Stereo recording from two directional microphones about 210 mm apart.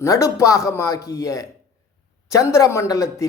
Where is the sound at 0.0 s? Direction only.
15° left (ahead or behind).